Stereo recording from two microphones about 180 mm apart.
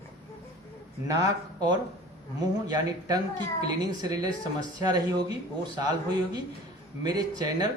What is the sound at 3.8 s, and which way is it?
Speech, 20° right (ahead or behind).